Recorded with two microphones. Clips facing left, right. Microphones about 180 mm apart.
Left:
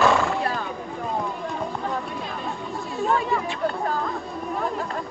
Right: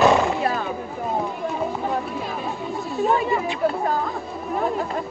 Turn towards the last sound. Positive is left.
turn(degrees=-15)  # may be behind; listen again after turning